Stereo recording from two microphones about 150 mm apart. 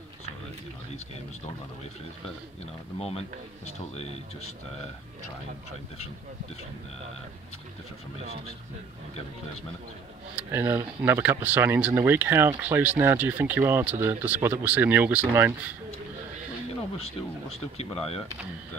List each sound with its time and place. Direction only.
2.6 s speech: 40° left (ahead or behind)
10.3 s speech: 15° right (ahead or behind)
17.7 s speech: 40° left (ahead or behind)